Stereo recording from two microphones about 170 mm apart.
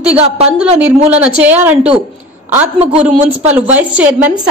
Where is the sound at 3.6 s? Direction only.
10° right (ahead or behind).